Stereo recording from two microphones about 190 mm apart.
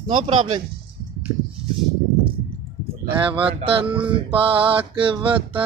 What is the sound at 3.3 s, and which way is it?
Music, 30° right (ahead or behind).